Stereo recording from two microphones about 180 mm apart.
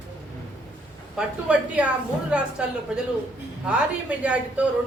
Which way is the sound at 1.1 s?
5° right (ahead or behind).